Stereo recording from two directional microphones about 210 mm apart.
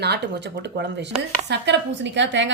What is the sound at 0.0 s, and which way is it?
Speech, 55° right (ahead or behind).